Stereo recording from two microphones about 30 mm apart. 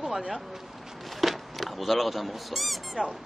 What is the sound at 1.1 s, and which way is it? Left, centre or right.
Speech, centre.